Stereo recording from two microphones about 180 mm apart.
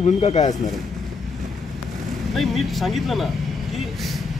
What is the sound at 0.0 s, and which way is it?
Speech, 35° left (ahead or behind).